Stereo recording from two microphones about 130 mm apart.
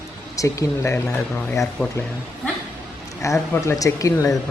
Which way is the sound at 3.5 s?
25° left (ahead or behind).